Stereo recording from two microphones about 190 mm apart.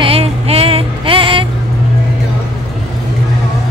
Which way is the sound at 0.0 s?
30° right (ahead or behind).